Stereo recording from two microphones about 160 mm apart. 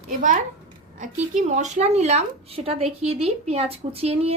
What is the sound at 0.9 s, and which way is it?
A woman's voice, 50° right (ahead or behind).